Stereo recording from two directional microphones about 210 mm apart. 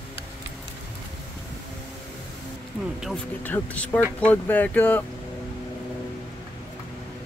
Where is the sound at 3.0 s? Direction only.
5° left (ahead or behind).